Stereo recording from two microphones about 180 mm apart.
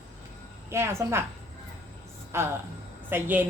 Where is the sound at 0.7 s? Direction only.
15° right (ahead or behind).